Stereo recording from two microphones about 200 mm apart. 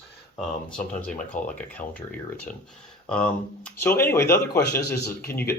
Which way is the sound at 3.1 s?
5° left (ahead or behind).